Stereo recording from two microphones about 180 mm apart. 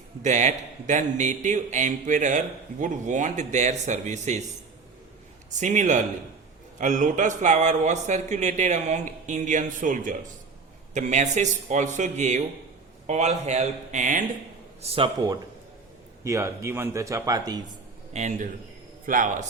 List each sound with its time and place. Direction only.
0.2 s a man's voice: 40° right (ahead or behind)
5.5 s a man's voice: 40° right (ahead or behind)
14.8 s a man's voice: 30° right (ahead or behind)
16.2 s speech: 15° right (ahead or behind)
18.1 s a man's voice: 40° right (ahead or behind)